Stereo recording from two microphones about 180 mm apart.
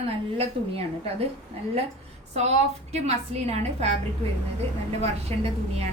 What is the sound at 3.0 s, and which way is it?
Speech, 40° right (ahead or behind).